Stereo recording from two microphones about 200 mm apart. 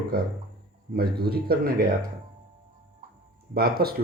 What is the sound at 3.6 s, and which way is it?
Speech, 50° right (ahead or behind).